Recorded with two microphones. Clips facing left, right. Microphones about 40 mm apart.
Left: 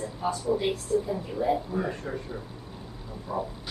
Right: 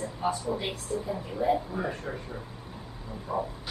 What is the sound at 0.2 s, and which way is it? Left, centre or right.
Speech, centre.